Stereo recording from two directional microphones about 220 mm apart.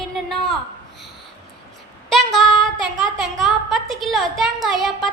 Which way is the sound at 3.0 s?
Centre (ahead or behind).